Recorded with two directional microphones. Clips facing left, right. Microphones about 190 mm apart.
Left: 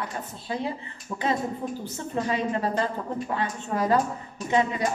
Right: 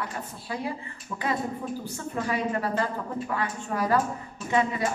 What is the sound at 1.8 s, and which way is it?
A woman's voice, 25° left (ahead or behind).